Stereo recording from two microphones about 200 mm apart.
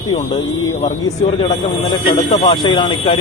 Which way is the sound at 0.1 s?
30° left (ahead or behind).